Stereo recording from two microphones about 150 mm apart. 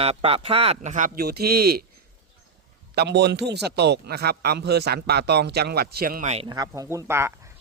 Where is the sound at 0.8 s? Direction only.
60° right (ahead or behind); by 1.8 s 90° right.